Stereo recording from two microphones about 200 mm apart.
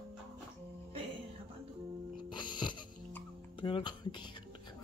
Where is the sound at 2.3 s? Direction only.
20° left (ahead or behind).